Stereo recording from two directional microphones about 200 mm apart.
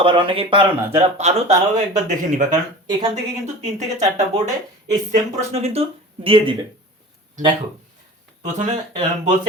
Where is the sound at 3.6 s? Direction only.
35° right (ahead or behind).